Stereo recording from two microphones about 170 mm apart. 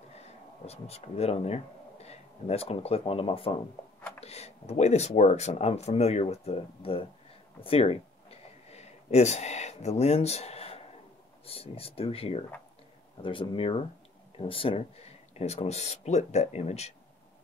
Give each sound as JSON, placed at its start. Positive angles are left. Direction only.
{"t": 0.2, "sound": "speech", "side_deg": 35}
{"t": 7.6, "sound": "a sound", "side_deg": 35}
{"t": 11.4, "sound": "speech", "side_deg": 35}